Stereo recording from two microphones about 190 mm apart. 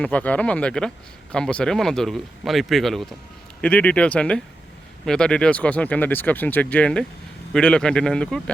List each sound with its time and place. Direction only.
0.0 s speech: 10° left (ahead or behind)